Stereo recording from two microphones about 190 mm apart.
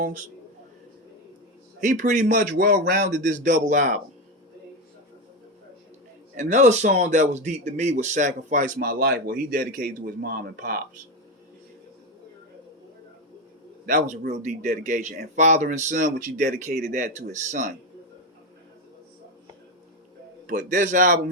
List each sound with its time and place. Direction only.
1.8 s speech: 40° right (ahead or behind)
6.3 s speech: 40° right (ahead or behind)
13.8 s speech: 50° right (ahead or behind)
14.4 s speech: 40° right (ahead or behind)
20.5 s speech: 45° right (ahead or behind)